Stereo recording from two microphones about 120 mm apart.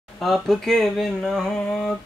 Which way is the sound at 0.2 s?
Centre (ahead or behind).